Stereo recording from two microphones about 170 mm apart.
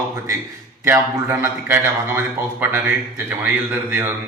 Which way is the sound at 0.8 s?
15° right (ahead or behind).